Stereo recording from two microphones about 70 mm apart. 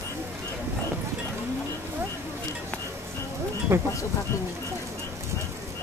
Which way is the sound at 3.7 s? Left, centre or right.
Right.